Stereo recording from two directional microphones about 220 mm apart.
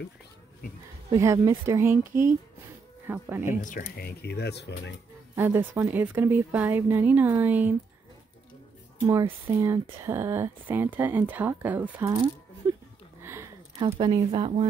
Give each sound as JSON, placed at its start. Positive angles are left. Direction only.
{"t": 1.1, "sound": "speech", "side_deg": -15}
{"t": 3.6, "sound": "speech", "side_deg": 40}
{"t": 5.3, "sound": "speech", "side_deg": -10}
{"t": 9.0, "sound": "speech", "side_deg": -15}
{"t": 12.6, "sound": "a sound", "side_deg": -20}
{"t": 13.2, "sound": "a sound", "side_deg": -10}
{"t": 13.8, "sound": "speech", "side_deg": -20}